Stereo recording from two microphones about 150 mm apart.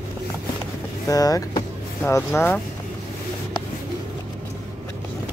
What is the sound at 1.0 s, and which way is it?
Speech, 25° left (ahead or behind).